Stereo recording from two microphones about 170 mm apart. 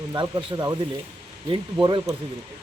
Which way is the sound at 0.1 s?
25° right (ahead or behind).